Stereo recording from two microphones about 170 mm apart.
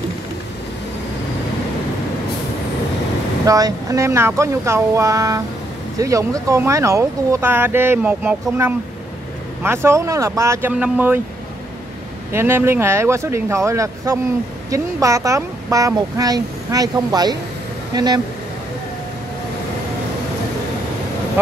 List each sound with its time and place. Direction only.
3.4 s speech: 20° right (ahead or behind)
12.3 s speech: 15° right (ahead or behind)